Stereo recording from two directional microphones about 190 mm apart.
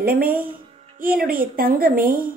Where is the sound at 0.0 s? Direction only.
50° right (ahead or behind).